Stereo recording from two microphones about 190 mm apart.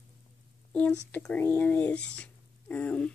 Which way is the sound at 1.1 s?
10° left (ahead or behind).